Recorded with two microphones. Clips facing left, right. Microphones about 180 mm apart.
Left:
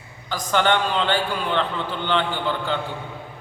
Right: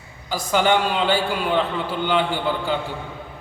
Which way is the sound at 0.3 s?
10° right (ahead or behind).